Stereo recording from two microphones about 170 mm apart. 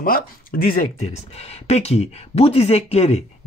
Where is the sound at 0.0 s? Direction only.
60° left (ahead or behind).